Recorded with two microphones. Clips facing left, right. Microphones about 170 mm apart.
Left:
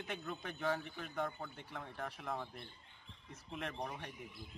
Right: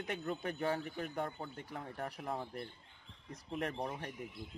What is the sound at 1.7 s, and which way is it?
A man's voice, 45° right (ahead or behind).